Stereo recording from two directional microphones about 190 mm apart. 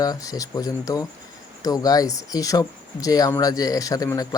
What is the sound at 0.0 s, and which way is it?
Speech, 20° left (ahead or behind).